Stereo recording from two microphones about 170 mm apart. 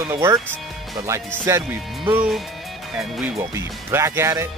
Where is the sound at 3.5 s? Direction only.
15° right (ahead or behind).